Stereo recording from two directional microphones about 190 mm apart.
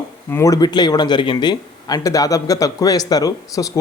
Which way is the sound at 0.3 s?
15° left (ahead or behind).